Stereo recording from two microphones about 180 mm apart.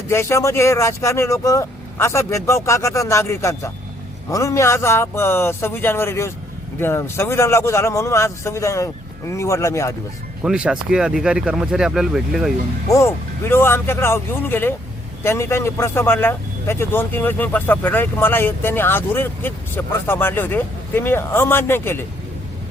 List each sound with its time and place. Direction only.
0.1 s a man's voice: 15° left (ahead or behind)
10.4 s speech: 5° right (ahead or behind)
12.9 s a man's voice: 15° left (ahead or behind)